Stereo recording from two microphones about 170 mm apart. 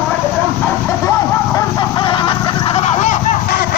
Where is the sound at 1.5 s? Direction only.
25° left (ahead or behind); by 3.8 s 65° left (ahead or behind).